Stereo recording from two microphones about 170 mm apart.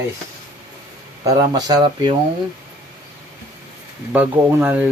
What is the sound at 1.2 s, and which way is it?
Speech, 20° right (ahead or behind).